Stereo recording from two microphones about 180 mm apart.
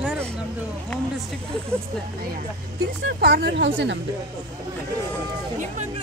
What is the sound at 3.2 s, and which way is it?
Speech, 70° right (ahead or behind).